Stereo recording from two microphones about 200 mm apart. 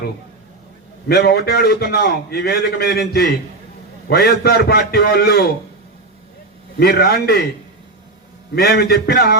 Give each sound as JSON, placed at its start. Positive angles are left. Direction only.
{"t": 1.0, "sound": "a man's voice", "side_deg": 55}
{"t": 6.7, "sound": "a man's voice", "side_deg": 50}
{"t": 8.5, "sound": "a man's voice", "side_deg": 50}